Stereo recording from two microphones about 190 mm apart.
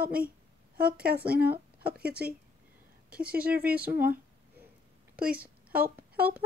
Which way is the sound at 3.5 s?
55° right (ahead or behind).